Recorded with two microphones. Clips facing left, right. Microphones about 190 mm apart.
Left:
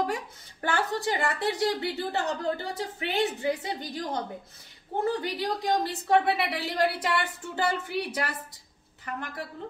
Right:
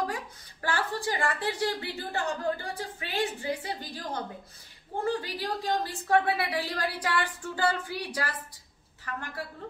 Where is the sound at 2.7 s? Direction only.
20° left (ahead or behind).